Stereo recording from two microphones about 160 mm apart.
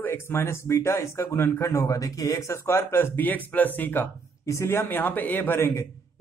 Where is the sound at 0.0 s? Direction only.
15° left (ahead or behind).